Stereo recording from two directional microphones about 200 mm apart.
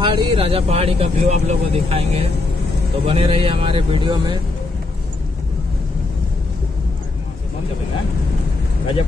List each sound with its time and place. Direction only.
0.0 s speech: 25° right (ahead or behind)